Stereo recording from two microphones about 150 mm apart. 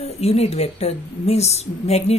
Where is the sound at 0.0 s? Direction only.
45° left (ahead or behind).